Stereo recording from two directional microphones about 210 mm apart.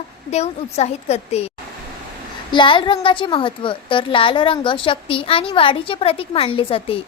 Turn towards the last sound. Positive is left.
turn(degrees=25)  # may be behind; listen again after turning